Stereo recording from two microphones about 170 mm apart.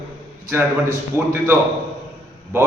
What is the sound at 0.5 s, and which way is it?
A man's voice, 15° right (ahead or behind).